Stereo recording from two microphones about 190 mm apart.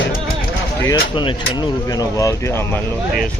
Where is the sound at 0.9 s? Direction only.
25° left (ahead or behind).